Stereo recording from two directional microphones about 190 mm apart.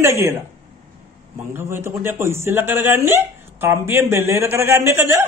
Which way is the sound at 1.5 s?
15° right (ahead or behind).